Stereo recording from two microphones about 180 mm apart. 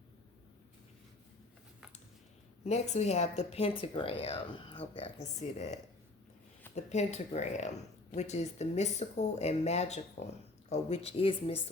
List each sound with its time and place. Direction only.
2.6 s speech: 40° left (ahead or behind)